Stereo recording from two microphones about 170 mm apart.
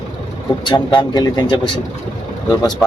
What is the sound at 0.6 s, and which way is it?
Speech, 25° left (ahead or behind).